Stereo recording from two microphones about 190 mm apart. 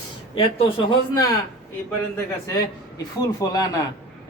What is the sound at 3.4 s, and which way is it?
Speech, 20° left (ahead or behind).